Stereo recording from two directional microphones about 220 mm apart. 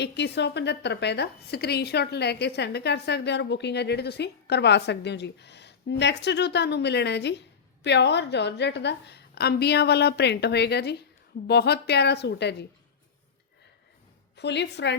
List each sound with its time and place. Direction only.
0.0 s a woman's voice: 50° left (ahead or behind)
14.3 s a woman's voice: 50° left (ahead or behind)